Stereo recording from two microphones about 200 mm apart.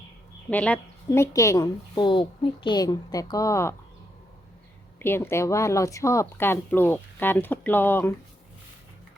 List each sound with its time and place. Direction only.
0.5 s a woman's voice: 5° left (ahead or behind)
4.9 s a woman's voice: 10° left (ahead or behind)